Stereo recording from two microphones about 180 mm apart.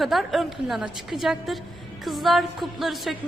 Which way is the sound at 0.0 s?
Centre (ahead or behind).